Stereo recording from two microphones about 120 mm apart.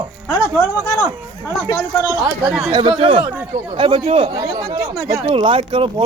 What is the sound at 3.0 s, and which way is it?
Speech, 45° right (ahead or behind).